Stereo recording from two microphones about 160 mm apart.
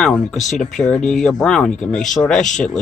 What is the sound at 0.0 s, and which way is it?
Speech, 5° left (ahead or behind).